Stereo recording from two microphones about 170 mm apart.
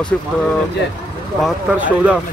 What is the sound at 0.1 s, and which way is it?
Speech, 10° left (ahead or behind).